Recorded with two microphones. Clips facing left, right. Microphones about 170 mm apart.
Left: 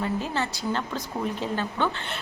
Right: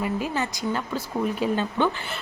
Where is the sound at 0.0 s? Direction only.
10° right (ahead or behind).